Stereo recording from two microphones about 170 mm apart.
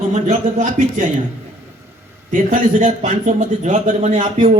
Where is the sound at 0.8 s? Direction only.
45° right (ahead or behind).